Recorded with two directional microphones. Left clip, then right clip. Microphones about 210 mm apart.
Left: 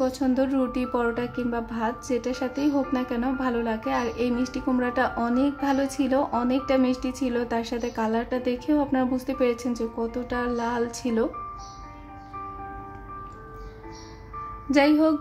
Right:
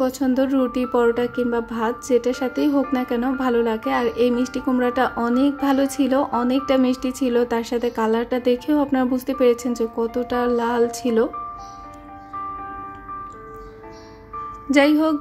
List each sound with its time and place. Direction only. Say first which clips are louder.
0.0 s a woman's voice: right 4 dB; 20° right (ahead or behind)
14.7 s a woman's voice: right 3 dB; 25° right (ahead or behind)